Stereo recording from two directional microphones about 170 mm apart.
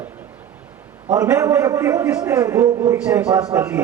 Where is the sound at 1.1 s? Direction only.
15° right (ahead or behind).